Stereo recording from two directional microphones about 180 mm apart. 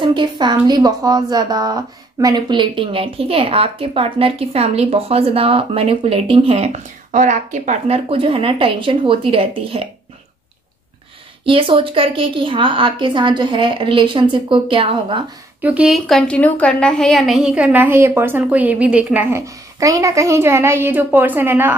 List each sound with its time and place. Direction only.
0.0 s a woman's voice: 25° right (ahead or behind)
11.4 s a woman's voice: 30° right (ahead or behind)
15.6 s a woman's voice: 5° right (ahead or behind)